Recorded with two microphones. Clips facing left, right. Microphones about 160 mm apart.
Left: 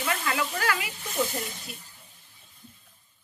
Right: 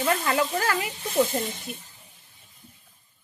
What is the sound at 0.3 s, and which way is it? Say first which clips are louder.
Speech: right 4 dB; 35° right (ahead or behind).